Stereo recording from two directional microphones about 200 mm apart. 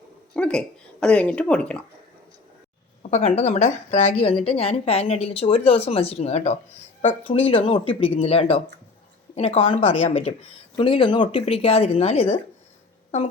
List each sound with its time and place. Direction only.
0.3 s speech: 5° left (ahead or behind)
3.0 s a woman's voice: 35° left (ahead or behind)